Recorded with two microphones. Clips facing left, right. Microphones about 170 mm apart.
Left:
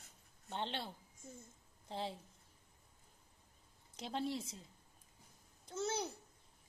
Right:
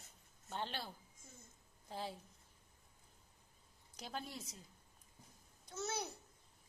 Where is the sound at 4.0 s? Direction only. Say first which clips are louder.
Left 7 dB; 25° left (ahead or behind).